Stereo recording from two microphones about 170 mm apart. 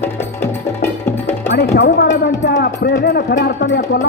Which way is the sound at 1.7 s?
75° left (ahead or behind).